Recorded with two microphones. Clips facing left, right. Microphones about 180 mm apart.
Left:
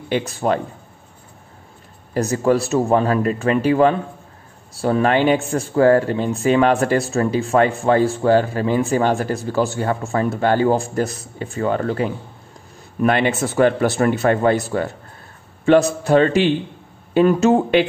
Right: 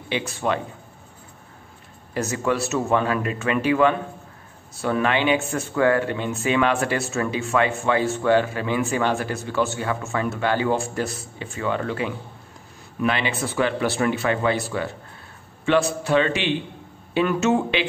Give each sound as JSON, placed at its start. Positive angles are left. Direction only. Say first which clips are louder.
{"t": 0.3, "sound": "speech", "louder": "left 3 dB", "side_deg": 35}
{"t": 2.1, "sound": "speech", "louder": "left 6 dB", "side_deg": 35}